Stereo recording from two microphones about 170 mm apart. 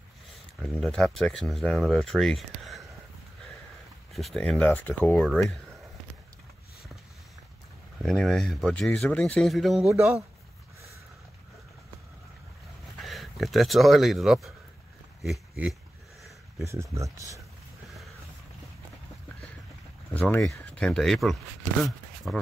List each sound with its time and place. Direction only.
0.6 s speech: 5° left (ahead or behind)
4.1 s speech: centre (ahead or behind)
8.0 s speech: 5° left (ahead or behind)
9.8 s speech: 15° right (ahead or behind)
13.0 s speech: centre (ahead or behind)
16.6 s speech: 15° right (ahead or behind)
20.2 s speech: 10° left (ahead or behind)